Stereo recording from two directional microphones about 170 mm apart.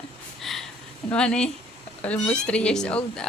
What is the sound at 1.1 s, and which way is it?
A woman's voice, 5° left (ahead or behind).